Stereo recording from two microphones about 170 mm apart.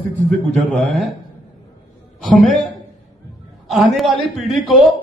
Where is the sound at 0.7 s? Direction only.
Centre (ahead or behind).